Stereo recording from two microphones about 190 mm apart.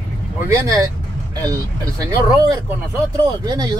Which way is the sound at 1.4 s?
20° right (ahead or behind).